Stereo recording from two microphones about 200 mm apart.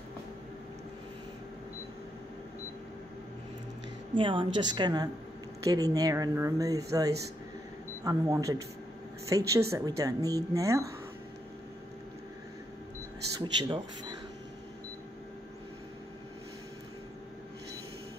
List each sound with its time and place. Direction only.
4.1 s a woman's voice: 25° right (ahead or behind)
13.4 s a woman's voice: 20° right (ahead or behind)